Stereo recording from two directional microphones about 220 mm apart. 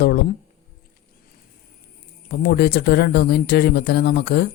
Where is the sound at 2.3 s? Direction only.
45° left (ahead or behind).